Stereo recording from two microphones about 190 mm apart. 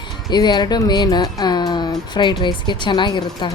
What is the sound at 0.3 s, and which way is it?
A woman's voice, 25° left (ahead or behind).